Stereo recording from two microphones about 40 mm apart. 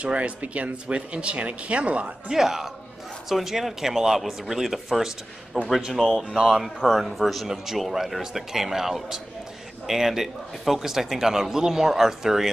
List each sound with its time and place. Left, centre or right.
0.0 s speech: right
2.3 s speech: centre
6.4 s speech: centre